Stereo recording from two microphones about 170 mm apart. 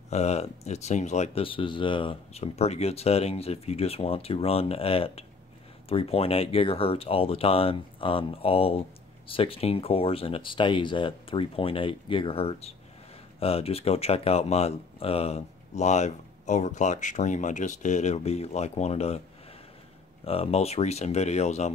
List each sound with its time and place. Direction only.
0.1 s speech: 40° left (ahead or behind)
20.2 s speech: 35° left (ahead or behind)